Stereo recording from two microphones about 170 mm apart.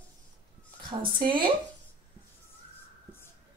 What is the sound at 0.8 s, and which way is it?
Speech, 30° right (ahead or behind).